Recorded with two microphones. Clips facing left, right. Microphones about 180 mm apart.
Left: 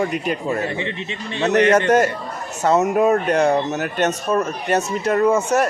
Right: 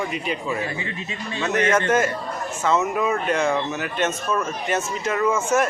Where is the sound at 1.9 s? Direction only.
40° left (ahead or behind).